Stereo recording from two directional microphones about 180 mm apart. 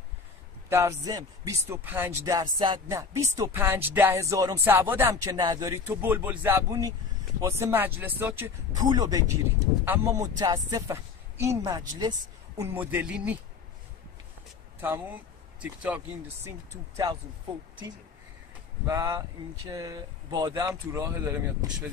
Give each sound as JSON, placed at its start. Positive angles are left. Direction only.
{"t": 0.7, "sound": "speech", "side_deg": -15}
{"t": 8.7, "sound": "speech", "side_deg": -20}
{"t": 15.6, "sound": "speech", "side_deg": -5}
{"t": 16.4, "sound": "speech", "side_deg": -20}
{"t": 18.9, "sound": "speech", "side_deg": -20}